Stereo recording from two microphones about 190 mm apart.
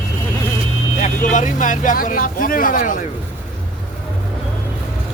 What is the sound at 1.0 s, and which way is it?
Speech, 40° left (ahead or behind).